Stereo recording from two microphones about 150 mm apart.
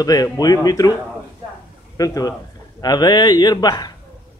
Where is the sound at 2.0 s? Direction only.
25° left (ahead or behind).